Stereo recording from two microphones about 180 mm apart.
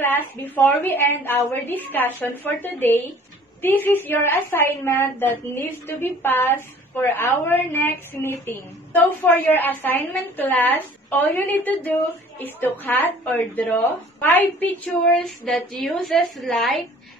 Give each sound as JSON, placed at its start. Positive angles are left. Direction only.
{"t": 0.1, "sound": "a woman's voice", "side_deg": 10}